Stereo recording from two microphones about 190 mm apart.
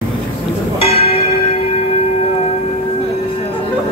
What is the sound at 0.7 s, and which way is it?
Church bell, 30° left (ahead or behind).